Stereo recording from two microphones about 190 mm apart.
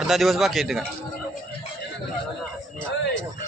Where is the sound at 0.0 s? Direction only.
Centre (ahead or behind).